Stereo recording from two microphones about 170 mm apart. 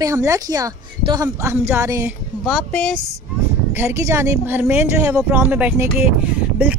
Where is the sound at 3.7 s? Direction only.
15° right (ahead or behind).